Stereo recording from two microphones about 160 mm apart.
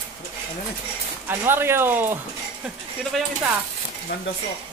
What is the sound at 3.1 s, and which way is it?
Speech, centre (ahead or behind).